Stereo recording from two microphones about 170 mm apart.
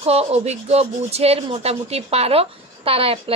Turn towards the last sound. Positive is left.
turn(degrees=-35)  # may be behind; listen again after turning